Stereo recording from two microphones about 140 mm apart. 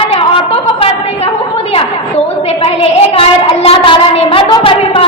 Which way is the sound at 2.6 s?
40° left (ahead or behind).